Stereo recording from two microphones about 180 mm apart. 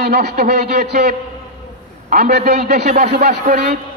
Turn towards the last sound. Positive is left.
turn(degrees=-60)  # may be behind; listen again after turning